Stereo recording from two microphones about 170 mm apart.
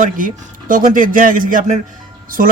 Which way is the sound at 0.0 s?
50° right (ahead or behind).